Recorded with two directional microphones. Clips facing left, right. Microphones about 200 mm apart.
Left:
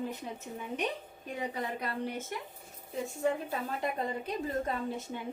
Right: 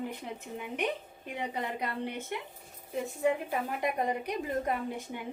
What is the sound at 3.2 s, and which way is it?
A woman's voice, 15° right (ahead or behind).